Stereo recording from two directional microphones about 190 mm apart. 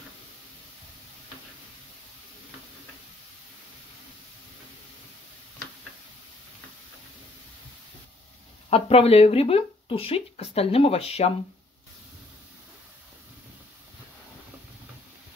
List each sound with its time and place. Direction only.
8.6 s speech: 30° left (ahead or behind)